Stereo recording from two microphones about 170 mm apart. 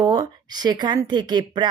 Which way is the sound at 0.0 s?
25° right (ahead or behind).